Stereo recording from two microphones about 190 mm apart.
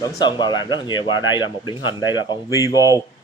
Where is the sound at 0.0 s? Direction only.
20° left (ahead or behind).